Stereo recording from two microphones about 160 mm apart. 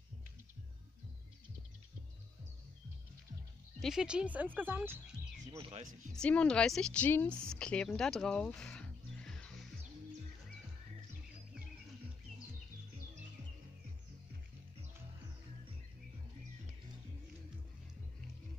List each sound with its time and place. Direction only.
3.8 s speech: 5° right (ahead or behind)
5.6 s speech: 35° right (ahead or behind)
6.1 s a woman's voice: 5° left (ahead or behind)
7.5 s music: 5° left (ahead or behind)